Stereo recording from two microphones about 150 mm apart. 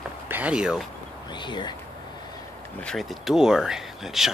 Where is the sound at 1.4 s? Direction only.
30° left (ahead or behind).